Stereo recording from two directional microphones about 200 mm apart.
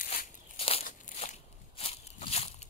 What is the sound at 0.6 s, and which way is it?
Crunch, 30° left (ahead or behind).